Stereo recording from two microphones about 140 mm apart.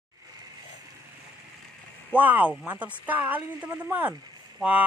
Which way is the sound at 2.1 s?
10° right (ahead or behind).